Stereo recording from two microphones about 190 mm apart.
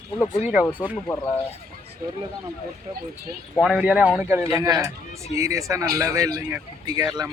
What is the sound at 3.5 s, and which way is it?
Speech, 5° right (ahead or behind).